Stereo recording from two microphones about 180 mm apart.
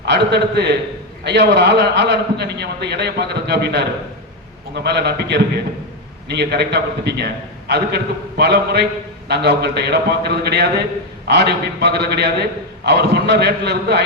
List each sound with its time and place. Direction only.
0.0 s a man's voice: 70° right (ahead or behind)